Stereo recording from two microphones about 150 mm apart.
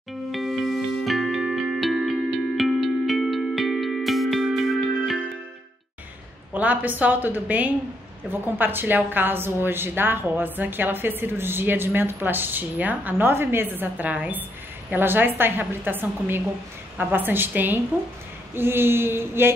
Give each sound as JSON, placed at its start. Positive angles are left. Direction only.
{"t": 0.3, "sound": "music", "side_deg": 0}
{"t": 6.5, "sound": "a woman's voice", "side_deg": -10}